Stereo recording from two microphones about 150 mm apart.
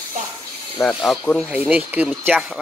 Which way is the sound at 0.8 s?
Centre (ahead or behind).